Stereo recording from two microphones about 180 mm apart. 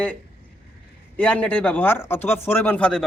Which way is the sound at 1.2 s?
5° left (ahead or behind).